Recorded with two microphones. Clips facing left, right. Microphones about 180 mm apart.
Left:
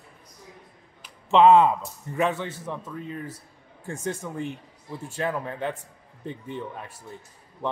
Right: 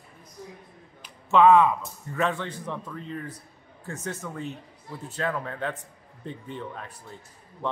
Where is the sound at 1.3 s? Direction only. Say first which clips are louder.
Left 1 dB; 30° left (ahead or behind).